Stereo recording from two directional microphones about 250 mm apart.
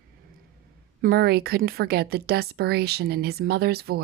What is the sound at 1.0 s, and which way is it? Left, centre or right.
A woman's voice, right.